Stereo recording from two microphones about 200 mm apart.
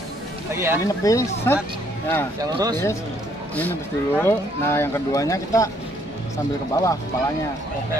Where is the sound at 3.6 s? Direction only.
10° left (ahead or behind).